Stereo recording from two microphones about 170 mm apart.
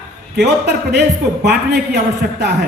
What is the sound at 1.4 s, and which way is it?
Speech, 75° right (ahead or behind).